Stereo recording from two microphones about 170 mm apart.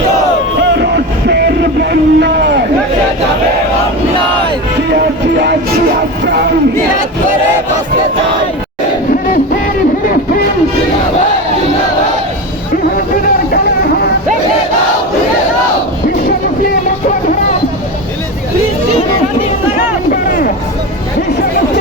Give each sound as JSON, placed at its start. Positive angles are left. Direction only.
{"t": 0.7, "sound": "music", "side_deg": -75}
{"t": 4.9, "sound": "music", "side_deg": -70}
{"t": 19.7, "sound": "a sound", "side_deg": 55}